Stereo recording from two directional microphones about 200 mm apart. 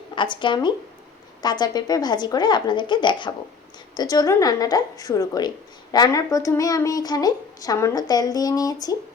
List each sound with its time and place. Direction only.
0.2 s a woman's voice: 25° left (ahead or behind)